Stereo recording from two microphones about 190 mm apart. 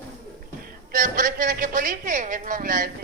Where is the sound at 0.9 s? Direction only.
45° right (ahead or behind).